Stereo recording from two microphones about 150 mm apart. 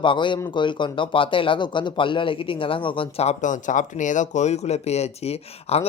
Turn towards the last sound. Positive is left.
turn(degrees=45)  # may be behind; listen again after turning